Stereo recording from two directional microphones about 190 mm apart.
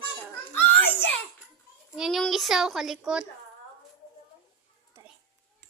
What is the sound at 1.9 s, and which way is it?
A child's voice, centre (ahead or behind).